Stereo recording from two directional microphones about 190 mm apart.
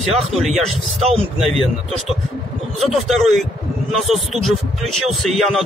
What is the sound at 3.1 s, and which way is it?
A man's voice, centre (ahead or behind).